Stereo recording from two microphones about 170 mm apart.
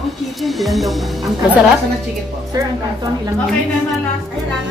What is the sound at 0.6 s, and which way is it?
Music, centre (ahead or behind).